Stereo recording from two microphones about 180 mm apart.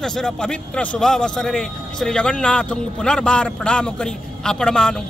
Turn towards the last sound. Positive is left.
turn(degrees=5)  # may be behind; listen again after turning